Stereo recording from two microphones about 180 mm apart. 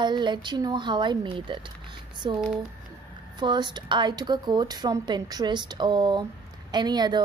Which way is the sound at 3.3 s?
25° right (ahead or behind).